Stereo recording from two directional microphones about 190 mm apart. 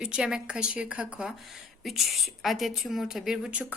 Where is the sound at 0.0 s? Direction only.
5° right (ahead or behind).